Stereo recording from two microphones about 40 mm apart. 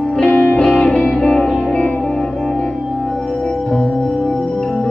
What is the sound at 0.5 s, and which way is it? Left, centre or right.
Music, left.